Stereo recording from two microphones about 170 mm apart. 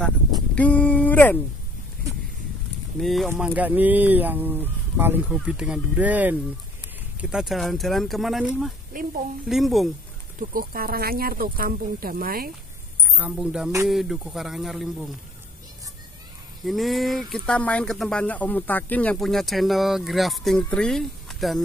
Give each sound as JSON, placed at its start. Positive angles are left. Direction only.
{"t": 0.0, "sound": "a sound", "side_deg": 5}
{"t": 3.0, "sound": "speech", "side_deg": 0}
{"t": 8.9, "sound": "a woman's voice", "side_deg": -55}
{"t": 9.5, "sound": "speech", "side_deg": 0}
{"t": 10.5, "sound": "speech", "side_deg": -60}
{"t": 13.1, "sound": "speech", "side_deg": -10}
{"t": 16.6, "sound": "speech", "side_deg": 0}